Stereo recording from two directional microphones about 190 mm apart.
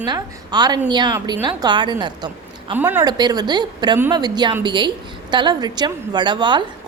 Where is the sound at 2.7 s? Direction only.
10° right (ahead or behind).